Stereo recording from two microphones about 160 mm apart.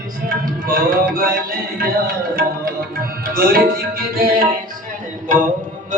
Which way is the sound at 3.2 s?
65° right (ahead or behind).